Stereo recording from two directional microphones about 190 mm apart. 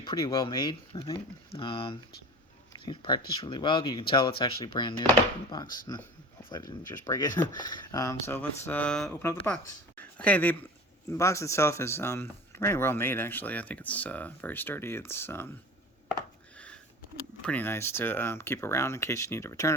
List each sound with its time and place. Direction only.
0.0 s speech: 25° left (ahead or behind)
5.6 s speech: 45° left (ahead or behind)
6.5 s speech: 20° left (ahead or behind)
17.4 s speech: 10° left (ahead or behind)